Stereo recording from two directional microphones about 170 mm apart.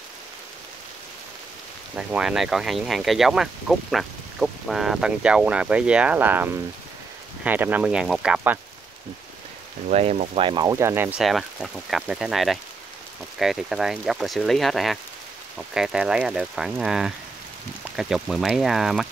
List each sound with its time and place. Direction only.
2.0 s speech: 5° right (ahead or behind)
9.8 s speech: 40° right (ahead or behind)
10.4 s speech: 25° right (ahead or behind)
11.1 s speech: centre (ahead or behind)